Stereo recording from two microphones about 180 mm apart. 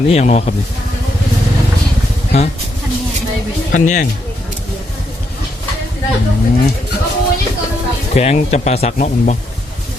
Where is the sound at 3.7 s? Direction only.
45° left (ahead or behind).